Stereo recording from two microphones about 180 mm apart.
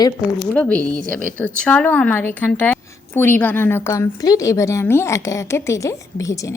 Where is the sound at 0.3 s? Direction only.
5° left (ahead or behind).